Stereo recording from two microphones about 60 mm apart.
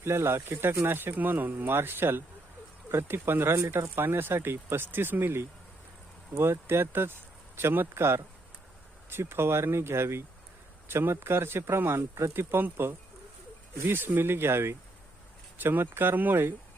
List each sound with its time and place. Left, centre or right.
0.0 s speech: right